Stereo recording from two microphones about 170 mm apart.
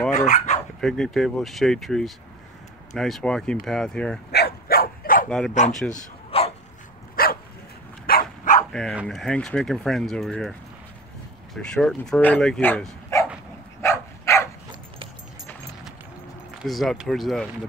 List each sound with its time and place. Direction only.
0.1 s speech: 45° left (ahead or behind)
0.7 s speech: 5° left (ahead or behind)
4.3 s dog: 70° left (ahead or behind)
5.7 s speech: centre (ahead or behind)
6.3 s dog: 35° left (ahead or behind)
7.2 s dog: 60° left (ahead or behind)
9.0 s speech: 5° left (ahead or behind)
11.5 s speech: centre (ahead or behind)
13.7 s dog: 15° left (ahead or behind)
16.6 s speech: centre (ahead or behind)